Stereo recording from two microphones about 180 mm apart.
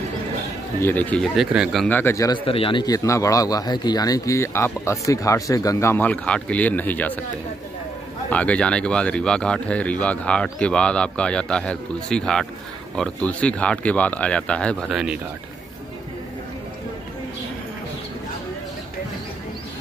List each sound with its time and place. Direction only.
0.7 s speech: 10° left (ahead or behind)
2.4 s speech: 30° left (ahead or behind); by 7.2 s 10° left (ahead or behind)
8.3 s speech: 5° left (ahead or behind)